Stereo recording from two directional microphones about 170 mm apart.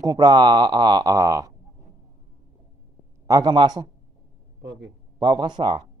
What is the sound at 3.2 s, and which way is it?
Speech, 20° right (ahead or behind).